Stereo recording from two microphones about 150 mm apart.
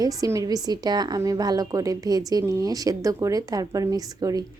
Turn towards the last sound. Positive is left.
turn(degrees=-25)  # may be behind; listen again after turning